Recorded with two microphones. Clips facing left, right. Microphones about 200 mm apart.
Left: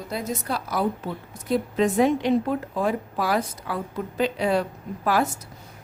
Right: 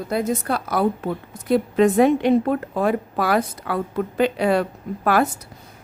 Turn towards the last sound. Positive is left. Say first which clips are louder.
# right 4 dB
turn(degrees=-65)  # may be behind; listen again after turning